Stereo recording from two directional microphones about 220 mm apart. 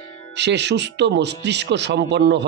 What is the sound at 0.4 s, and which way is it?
Speech, 50° right (ahead or behind).